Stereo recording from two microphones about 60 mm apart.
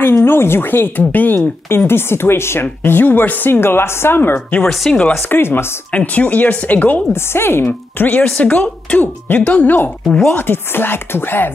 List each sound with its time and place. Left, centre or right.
0.1 s speech: left
1.9 s speech: left
2.6 s speech: left
4.6 s speech: centre
5.3 s speech: left
5.9 s speech: left
7.1 s speech: left